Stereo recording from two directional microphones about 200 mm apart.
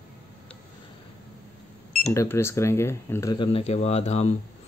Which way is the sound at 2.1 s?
15° left (ahead or behind).